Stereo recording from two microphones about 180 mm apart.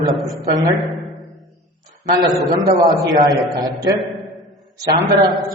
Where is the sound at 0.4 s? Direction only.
20° right (ahead or behind).